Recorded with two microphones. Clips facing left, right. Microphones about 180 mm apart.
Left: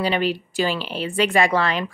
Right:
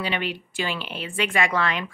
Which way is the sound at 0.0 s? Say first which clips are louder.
Left 7 dB; 35° left (ahead or behind).